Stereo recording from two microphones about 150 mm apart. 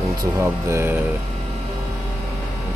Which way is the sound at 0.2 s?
20° right (ahead or behind).